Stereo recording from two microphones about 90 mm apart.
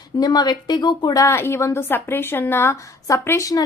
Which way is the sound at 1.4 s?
25° left (ahead or behind).